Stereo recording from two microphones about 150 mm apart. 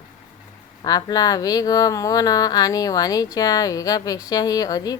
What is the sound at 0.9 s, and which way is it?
A woman's voice, 25° left (ahead or behind).